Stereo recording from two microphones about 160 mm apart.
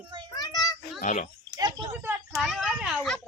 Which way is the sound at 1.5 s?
25° right (ahead or behind).